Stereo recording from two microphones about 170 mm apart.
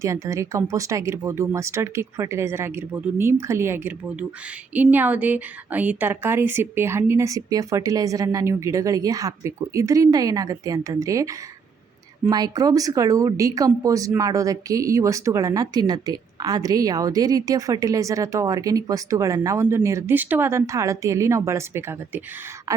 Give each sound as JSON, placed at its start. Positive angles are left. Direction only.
{"t": 0.0, "sound": "speech", "side_deg": -15}